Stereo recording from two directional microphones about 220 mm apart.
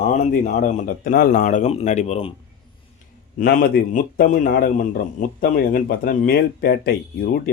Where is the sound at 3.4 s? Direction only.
45° left (ahead or behind).